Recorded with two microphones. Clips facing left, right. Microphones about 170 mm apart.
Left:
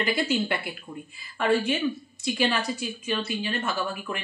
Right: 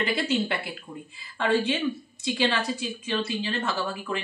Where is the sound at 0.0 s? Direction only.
25° right (ahead or behind).